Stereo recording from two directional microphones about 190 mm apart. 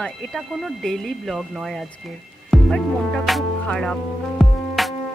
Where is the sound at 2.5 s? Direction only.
Centre (ahead or behind).